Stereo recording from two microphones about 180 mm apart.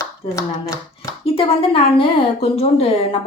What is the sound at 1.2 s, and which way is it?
A woman's voice, 30° left (ahead or behind).